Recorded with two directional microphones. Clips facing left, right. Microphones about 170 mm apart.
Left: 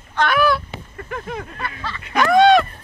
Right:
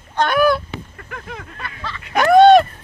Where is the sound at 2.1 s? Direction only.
45° right (ahead or behind).